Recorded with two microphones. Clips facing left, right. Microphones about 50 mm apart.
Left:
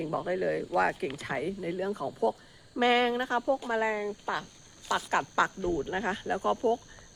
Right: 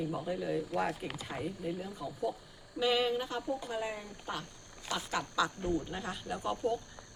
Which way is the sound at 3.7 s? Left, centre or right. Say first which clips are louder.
Left 9 dB; left.